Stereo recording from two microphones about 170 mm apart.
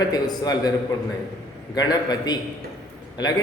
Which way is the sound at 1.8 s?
25° left (ahead or behind).